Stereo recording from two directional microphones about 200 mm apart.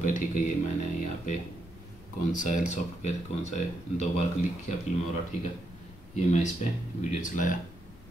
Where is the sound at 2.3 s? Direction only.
40° left (ahead or behind).